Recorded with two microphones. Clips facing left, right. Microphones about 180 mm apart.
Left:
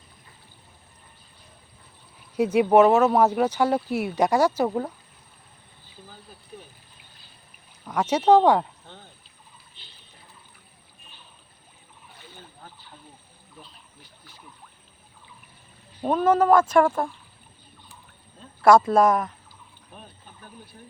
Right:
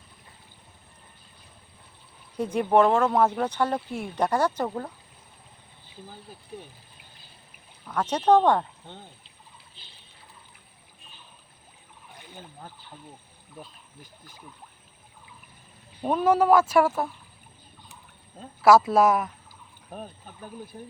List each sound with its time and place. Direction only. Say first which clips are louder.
2.4 s speech: left 4 dB; 10° left (ahead or behind)
7.9 s speech: left 3 dB; 10° left (ahead or behind)
13.6 s speech: right 5 dB; 45° right (ahead or behind)
16.0 s speech: left 1 dB; 10° right (ahead or behind)
18.6 s speech: left 1 dB; 5° right (ahead or behind)